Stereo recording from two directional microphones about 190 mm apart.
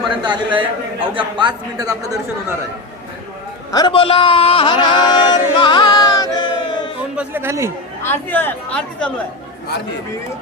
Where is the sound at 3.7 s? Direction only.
25° left (ahead or behind).